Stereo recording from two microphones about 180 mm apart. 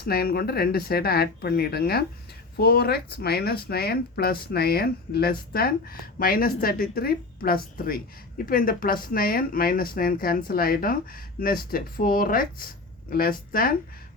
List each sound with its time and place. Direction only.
0.0 s speech: 60° left (ahead or behind)